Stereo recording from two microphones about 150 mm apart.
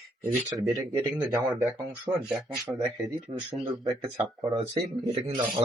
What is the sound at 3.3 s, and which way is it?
Speech, 45° right (ahead or behind).